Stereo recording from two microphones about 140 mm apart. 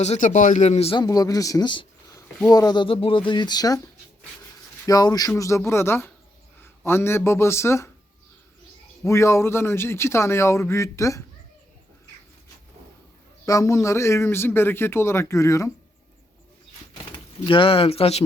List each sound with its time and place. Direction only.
0.0 s a man's voice: 55° left (ahead or behind)
0.9 s speech: 25° left (ahead or behind)
4.9 s speech: 25° left (ahead or behind)
9.0 s speech: 20° left (ahead or behind)
13.4 s speech: 20° left (ahead or behind)
16.9 s speech: 35° left (ahead or behind)